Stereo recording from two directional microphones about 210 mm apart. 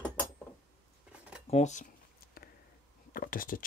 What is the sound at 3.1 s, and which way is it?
Speech, 40° left (ahead or behind).